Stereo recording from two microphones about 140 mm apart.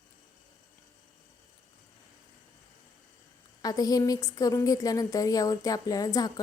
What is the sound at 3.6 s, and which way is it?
Speech, 25° left (ahead or behind).